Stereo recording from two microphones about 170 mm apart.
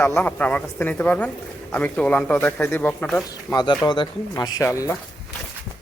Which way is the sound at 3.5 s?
25° left (ahead or behind).